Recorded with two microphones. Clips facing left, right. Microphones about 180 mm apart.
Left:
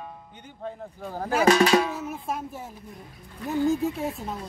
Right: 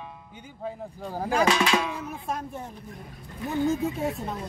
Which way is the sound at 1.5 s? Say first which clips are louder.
Left 5 dB; 40° left (ahead or behind).